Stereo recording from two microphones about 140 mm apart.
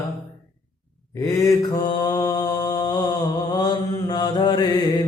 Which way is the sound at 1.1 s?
25° left (ahead or behind).